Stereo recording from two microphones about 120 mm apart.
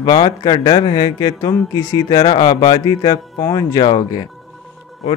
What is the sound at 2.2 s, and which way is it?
Speech, 45° left (ahead or behind).